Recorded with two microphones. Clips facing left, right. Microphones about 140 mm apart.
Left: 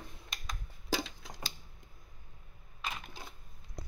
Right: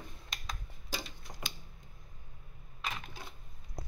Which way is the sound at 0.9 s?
90° left.